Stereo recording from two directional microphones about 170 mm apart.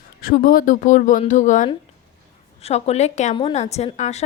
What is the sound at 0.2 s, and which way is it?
A woman's voice, 60° left (ahead or behind).